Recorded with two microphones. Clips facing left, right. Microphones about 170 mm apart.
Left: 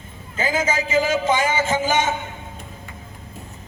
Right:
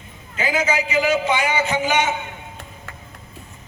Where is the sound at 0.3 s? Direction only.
45° left (ahead or behind).